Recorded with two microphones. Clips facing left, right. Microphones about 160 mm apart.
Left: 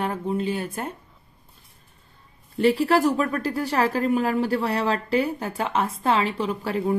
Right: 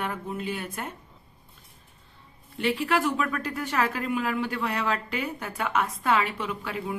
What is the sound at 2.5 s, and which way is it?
A woman's voice, 40° left (ahead or behind).